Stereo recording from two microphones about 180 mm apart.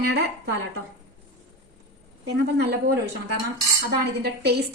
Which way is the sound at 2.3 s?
65° right (ahead or behind).